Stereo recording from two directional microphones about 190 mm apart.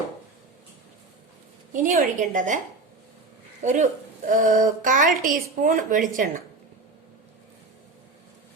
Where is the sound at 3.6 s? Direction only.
40° right (ahead or behind).